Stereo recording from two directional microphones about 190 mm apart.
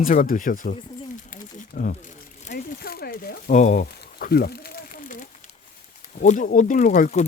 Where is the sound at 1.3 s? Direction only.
45° left (ahead or behind).